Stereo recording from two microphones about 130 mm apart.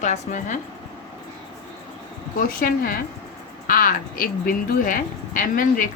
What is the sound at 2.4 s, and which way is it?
Speech, 90° left.